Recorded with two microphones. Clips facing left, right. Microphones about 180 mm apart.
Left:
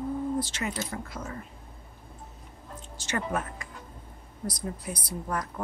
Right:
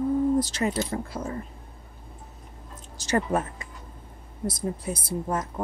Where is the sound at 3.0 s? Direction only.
35° right (ahead or behind).